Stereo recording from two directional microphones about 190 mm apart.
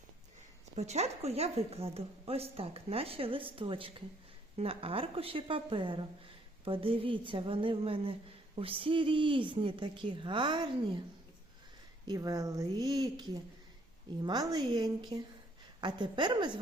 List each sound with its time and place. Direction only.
0.8 s a woman's voice: 35° right (ahead or behind)
12.0 s a woman's voice: 20° right (ahead or behind)